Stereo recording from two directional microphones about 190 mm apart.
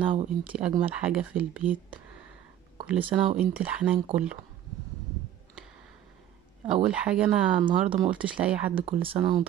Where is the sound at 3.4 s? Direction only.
5° right (ahead or behind).